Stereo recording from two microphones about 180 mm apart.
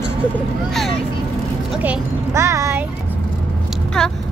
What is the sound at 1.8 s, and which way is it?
A child's voice, 15° right (ahead or behind).